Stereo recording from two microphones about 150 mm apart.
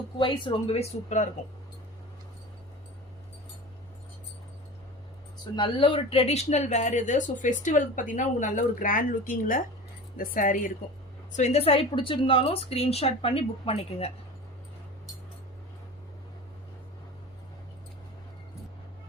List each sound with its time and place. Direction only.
0.2 s a woman's voice: 35° left (ahead or behind)
5.5 s a woman's voice: 35° left (ahead or behind); by 10.7 s 65° left (ahead or behind)
11.3 s a woman's voice: 50° left (ahead or behind)